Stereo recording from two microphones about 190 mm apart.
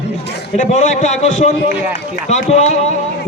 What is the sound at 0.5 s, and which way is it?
A man's voice, 40° left (ahead or behind).